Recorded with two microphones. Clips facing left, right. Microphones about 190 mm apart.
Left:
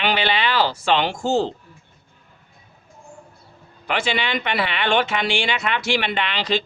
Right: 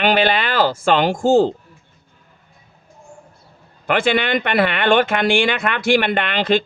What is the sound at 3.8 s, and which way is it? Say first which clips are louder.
A man's voice: right 6 dB; 55° right (ahead or behind).